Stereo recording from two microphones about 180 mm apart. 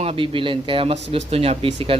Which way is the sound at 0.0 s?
30° right (ahead or behind).